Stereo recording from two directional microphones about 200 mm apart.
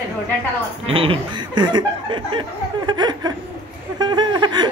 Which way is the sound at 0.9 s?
25° right (ahead or behind).